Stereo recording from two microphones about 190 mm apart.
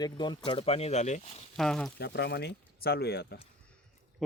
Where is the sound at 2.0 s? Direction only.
60° left (ahead or behind).